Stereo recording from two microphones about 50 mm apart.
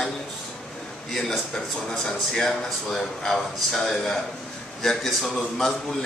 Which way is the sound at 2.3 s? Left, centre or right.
Centre.